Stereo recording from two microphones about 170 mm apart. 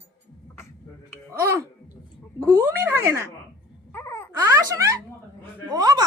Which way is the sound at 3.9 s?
15° left (ahead or behind).